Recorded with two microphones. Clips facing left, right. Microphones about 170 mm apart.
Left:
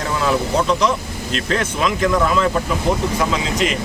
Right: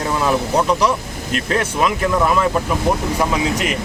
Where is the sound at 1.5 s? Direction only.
10° right (ahead or behind).